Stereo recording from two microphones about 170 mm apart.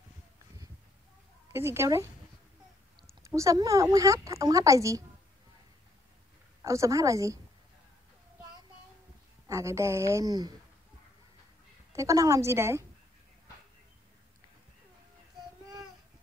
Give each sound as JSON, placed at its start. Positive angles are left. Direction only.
{"t": 1.5, "sound": "a woman's voice", "side_deg": -15}
{"t": 3.3, "sound": "speech", "side_deg": -20}
{"t": 6.6, "sound": "speech", "side_deg": -15}
{"t": 9.5, "sound": "a woman's voice", "side_deg": -15}
{"t": 11.9, "sound": "a woman's voice", "side_deg": -20}